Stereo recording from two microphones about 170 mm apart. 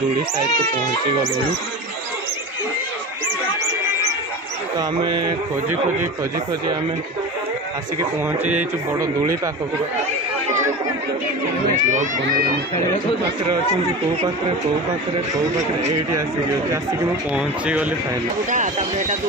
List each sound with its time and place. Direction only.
4.7 s speech: 25° right (ahead or behind)
8.5 s speech: 10° right (ahead or behind)
11.8 s speech: 45° right (ahead or behind)
15.3 s speech: 20° right (ahead or behind)
17.4 s speech: 5° right (ahead or behind)
18.5 s speech: 45° right (ahead or behind)